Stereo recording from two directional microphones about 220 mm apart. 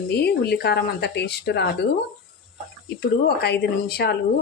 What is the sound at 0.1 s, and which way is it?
Speech, 50° left (ahead or behind).